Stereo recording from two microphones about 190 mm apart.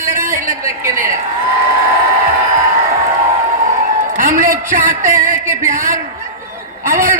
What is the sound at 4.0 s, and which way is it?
A man's voice, 45° right (ahead or behind).